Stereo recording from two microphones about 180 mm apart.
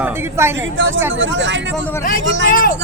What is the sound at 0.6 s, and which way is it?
Speech, 90° right.